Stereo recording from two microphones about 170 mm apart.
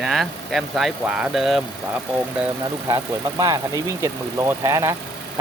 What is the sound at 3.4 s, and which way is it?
Speech, 20° right (ahead or behind).